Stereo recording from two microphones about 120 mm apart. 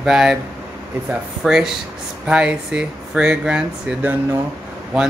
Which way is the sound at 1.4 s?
5° right (ahead or behind).